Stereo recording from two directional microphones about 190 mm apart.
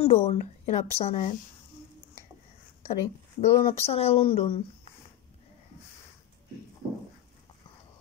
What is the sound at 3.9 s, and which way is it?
Speech, 30° left (ahead or behind).